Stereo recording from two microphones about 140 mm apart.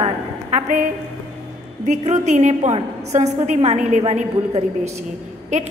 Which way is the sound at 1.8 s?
60° right (ahead or behind).